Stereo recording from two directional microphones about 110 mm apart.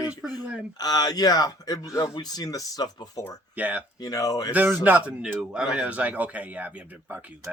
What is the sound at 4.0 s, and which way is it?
Speech, 35° left (ahead or behind).